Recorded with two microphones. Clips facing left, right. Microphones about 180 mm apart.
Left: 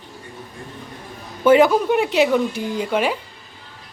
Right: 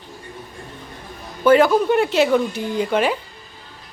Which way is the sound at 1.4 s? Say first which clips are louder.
Left 1 dB; 20° left (ahead or behind).